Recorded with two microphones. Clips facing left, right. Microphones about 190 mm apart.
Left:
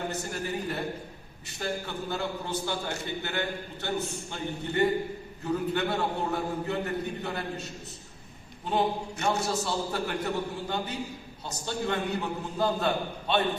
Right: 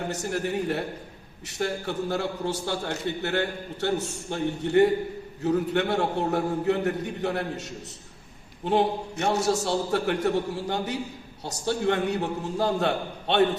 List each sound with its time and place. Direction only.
0.1 s a man's voice: 75° right (ahead or behind)
9.2 s a man's voice: 70° right (ahead or behind)